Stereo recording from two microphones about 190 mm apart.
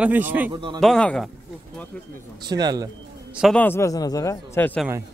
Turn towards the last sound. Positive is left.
turn(degrees=15)  # may be behind; listen again after turning